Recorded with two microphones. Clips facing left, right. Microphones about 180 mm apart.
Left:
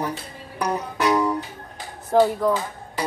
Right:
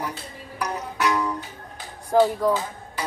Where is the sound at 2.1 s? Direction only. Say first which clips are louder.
Left 1 dB; centre (ahead or behind).